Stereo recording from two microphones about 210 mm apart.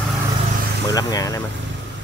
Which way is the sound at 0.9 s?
15° left (ahead or behind).